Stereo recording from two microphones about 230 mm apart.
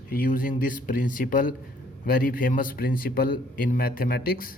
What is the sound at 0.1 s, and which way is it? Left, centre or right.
Speech, left.